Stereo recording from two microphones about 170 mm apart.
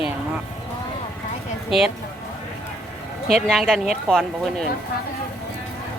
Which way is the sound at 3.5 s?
Centre (ahead or behind).